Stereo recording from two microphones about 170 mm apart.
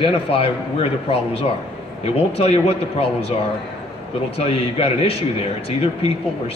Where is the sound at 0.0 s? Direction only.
35° left (ahead or behind).